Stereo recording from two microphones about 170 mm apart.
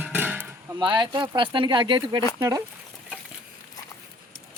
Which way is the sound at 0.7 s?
30° right (ahead or behind).